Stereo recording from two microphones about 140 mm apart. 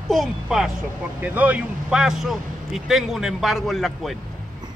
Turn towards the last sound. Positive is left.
turn(degrees=0)  # may be behind; listen again after turning